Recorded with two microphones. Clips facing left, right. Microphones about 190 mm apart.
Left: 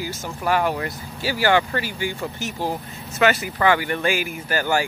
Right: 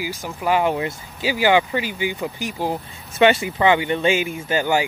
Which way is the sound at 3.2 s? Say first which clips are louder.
Right 3 dB; 25° right (ahead or behind).